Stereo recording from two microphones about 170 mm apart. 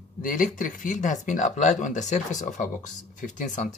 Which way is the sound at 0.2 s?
55° left (ahead or behind).